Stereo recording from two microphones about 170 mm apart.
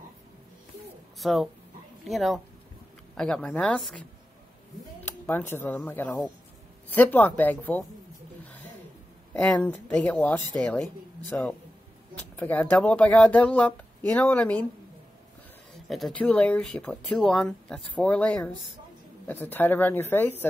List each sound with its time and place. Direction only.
1.2 s a woman's voice: centre (ahead or behind)
5.0 s speech: 10° left (ahead or behind)
9.3 s speech: 10° left (ahead or behind)
15.9 s speech: 5° left (ahead or behind)